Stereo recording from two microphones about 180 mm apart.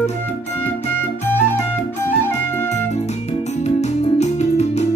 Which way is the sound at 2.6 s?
40° left (ahead or behind).